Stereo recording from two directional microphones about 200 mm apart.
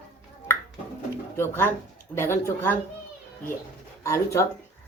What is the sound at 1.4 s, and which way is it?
Speech, 10° left (ahead or behind).